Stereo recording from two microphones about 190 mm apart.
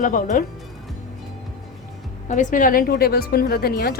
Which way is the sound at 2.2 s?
40° left (ahead or behind).